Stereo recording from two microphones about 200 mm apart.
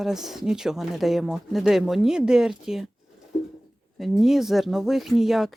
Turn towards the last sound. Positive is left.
turn(degrees=0)  # may be behind; listen again after turning